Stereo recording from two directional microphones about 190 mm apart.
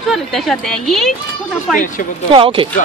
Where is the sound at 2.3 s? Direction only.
30° right (ahead or behind).